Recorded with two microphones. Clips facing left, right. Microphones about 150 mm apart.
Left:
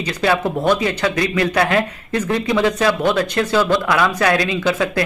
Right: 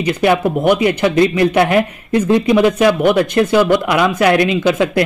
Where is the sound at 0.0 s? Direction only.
15° right (ahead or behind).